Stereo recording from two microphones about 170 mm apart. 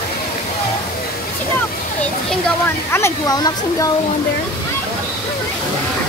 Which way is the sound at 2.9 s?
20° left (ahead or behind).